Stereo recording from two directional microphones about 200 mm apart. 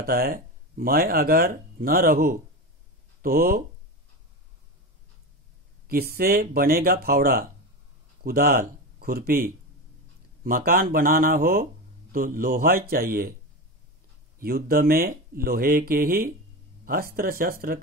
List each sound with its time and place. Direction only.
0.0 s speech: 50° right (ahead or behind)
6.1 s speech: 50° right (ahead or behind)
14.4 s speech: 50° right (ahead or behind)